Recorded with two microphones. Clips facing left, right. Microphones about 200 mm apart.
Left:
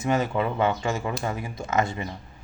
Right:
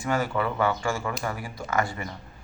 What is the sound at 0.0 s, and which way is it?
Speech, 20° left (ahead or behind).